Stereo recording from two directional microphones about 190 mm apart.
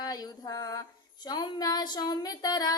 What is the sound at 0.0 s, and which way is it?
Female singing, 20° left (ahead or behind).